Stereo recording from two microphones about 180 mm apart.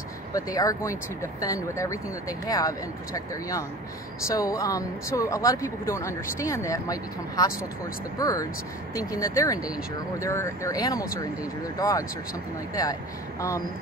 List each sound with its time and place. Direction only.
0.3 s speech: 20° left (ahead or behind)